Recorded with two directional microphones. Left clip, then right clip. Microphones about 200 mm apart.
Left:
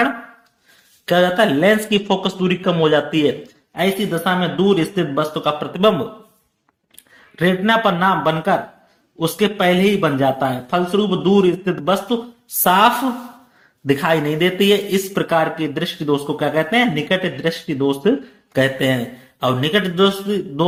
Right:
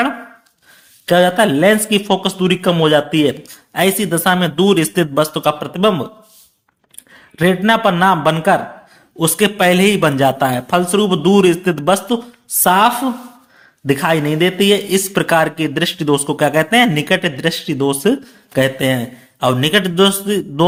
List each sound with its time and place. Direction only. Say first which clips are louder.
1.0 s a man's voice: right 3 dB; 25° right (ahead or behind)
3.8 s speech: right 4 dB; 40° right (ahead or behind)
7.3 s speech: right 3 dB; 25° right (ahead or behind)
12.6 s a man's voice: right 1 dB; 20° right (ahead or behind); by 20.7 s 35° right (ahead or behind)